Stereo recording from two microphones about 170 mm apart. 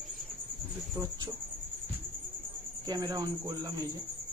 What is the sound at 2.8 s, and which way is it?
Speech, 25° right (ahead or behind).